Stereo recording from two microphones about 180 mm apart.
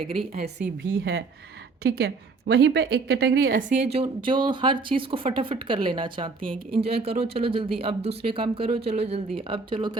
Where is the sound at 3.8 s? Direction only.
35° right (ahead or behind).